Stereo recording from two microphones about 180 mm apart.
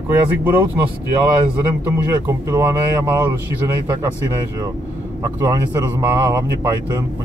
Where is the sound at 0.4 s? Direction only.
10° right (ahead or behind).